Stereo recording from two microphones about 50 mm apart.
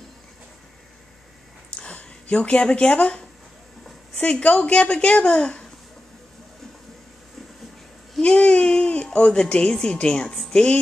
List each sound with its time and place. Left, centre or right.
1.8 s speech: left
4.4 s a woman's voice: left
8.2 s speech: left
10.5 s music: centre